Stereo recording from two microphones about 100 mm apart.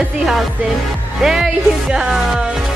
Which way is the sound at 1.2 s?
5° right (ahead or behind).